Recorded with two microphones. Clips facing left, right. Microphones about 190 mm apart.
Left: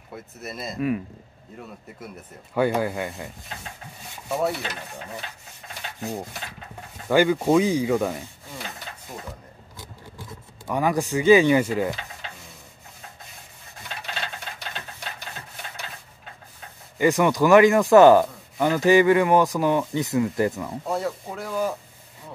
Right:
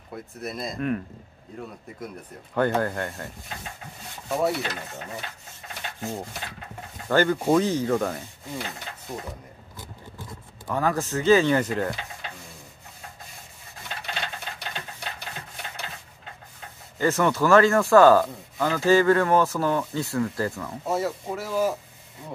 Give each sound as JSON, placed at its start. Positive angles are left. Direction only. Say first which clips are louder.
{"t": 0.1, "sound": "speech", "louder": "right 2 dB", "side_deg": 0}
{"t": 2.5, "sound": "speech", "louder": "left 1 dB", "side_deg": 10}
{"t": 4.3, "sound": "speech", "louder": "right 1 dB", "side_deg": 0}
{"t": 5.9, "sound": "speech", "louder": "left 2 dB", "side_deg": 15}
{"t": 10.7, "sound": "speech", "louder": "left 2 dB", "side_deg": 15}
{"t": 17.0, "sound": "speech", "louder": "left 3 dB", "side_deg": 15}
{"t": 20.8, "sound": "speech", "louder": "right 2 dB", "side_deg": -5}